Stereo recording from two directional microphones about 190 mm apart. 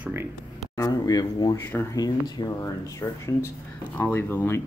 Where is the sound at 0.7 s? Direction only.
20° left (ahead or behind).